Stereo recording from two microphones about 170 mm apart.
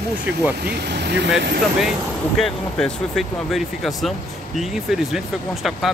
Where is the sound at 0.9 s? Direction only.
90° right.